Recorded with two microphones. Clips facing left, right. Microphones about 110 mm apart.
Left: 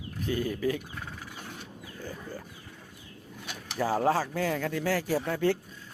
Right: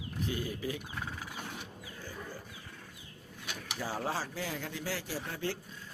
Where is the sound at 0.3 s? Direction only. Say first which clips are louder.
Left 9 dB; 45° left (ahead or behind).